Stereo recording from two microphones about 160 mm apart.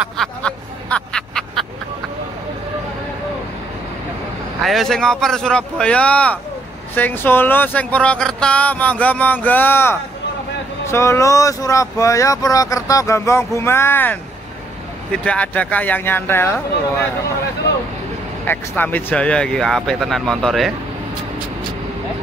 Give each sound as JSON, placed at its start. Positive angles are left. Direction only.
{"t": 0.0, "sound": "a sound", "side_deg": 5}
{"t": 4.6, "sound": "speech", "side_deg": 0}
{"t": 15.2, "sound": "speech", "side_deg": 10}
{"t": 18.5, "sound": "speech", "side_deg": 10}